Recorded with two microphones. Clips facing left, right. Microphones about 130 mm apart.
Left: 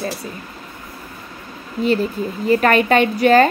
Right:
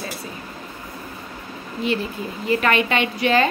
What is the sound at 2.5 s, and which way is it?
Speech, 40° left (ahead or behind).